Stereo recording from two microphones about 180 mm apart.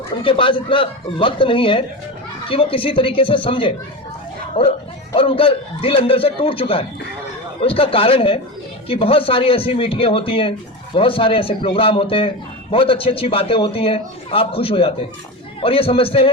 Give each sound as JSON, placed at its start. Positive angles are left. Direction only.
{"t": 0.2, "sound": "a man's voice", "side_deg": 30}